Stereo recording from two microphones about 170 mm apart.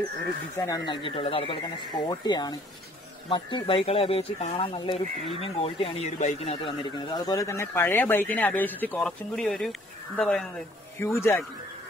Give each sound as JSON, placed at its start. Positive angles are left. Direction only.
{"t": 0.6, "sound": "speech", "side_deg": 20}
{"t": 11.0, "sound": "speech", "side_deg": 15}